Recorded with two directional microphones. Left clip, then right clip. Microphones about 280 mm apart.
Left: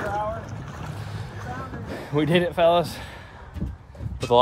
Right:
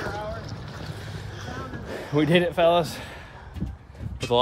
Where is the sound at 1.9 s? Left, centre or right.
Centre.